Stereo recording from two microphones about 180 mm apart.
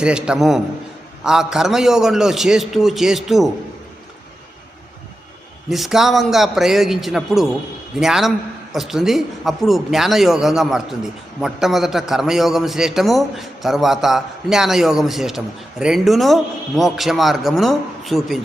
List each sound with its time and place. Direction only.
0.0 s a man's voice: 5° right (ahead or behind)
5.7 s a man's voice: centre (ahead or behind)